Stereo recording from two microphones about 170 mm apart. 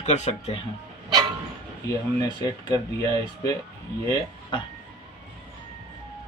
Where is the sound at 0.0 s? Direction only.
40° left (ahead or behind).